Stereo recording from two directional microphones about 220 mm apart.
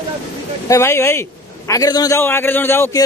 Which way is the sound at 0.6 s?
15° left (ahead or behind).